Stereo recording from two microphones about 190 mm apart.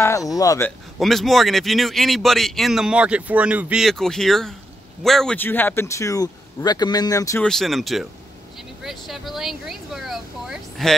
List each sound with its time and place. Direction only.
0.0 s speech: 15° left (ahead or behind)
0.7 s a man's voice: centre (ahead or behind); by 7.4 s 15° left (ahead or behind)
7.4 s a man's voice: centre (ahead or behind)